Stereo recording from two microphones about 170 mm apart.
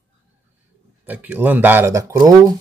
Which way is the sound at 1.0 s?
10° right (ahead or behind).